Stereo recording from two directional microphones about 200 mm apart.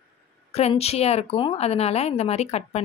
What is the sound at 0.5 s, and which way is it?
A woman's voice, 30° left (ahead or behind).